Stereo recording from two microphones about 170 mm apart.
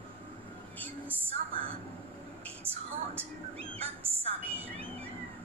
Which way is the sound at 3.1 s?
35° right (ahead or behind).